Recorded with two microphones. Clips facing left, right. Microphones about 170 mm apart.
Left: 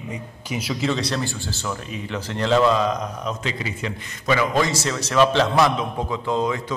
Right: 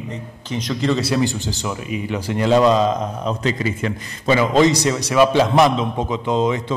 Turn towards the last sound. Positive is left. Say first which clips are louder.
# right 4 dB
turn(degrees=-20)  # may be behind; listen again after turning